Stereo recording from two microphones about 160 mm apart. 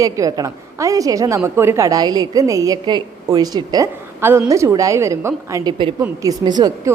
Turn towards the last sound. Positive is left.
turn(degrees=-25)  # may be behind; listen again after turning